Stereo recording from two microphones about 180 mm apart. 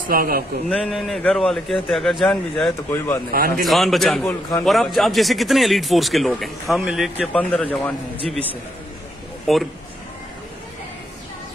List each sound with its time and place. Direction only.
0.1 s a man's voice: 55° right (ahead or behind)
0.7 s speech: 5° left (ahead or behind)
3.3 s a man's voice: 55° right (ahead or behind)
3.6 s speech: centre (ahead or behind)
9.5 s speech: centre (ahead or behind)